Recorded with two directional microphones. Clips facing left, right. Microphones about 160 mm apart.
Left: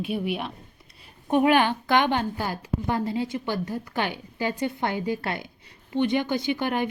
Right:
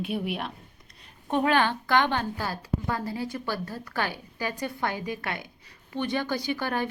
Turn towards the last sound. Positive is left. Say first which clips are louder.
# left 3 dB
turn(degrees=20)  # may be behind; listen again after turning